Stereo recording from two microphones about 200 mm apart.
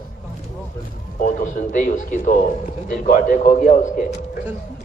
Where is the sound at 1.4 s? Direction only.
40° left (ahead or behind).